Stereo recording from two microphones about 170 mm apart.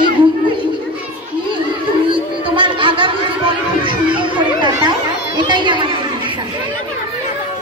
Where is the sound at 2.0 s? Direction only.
30° right (ahead or behind).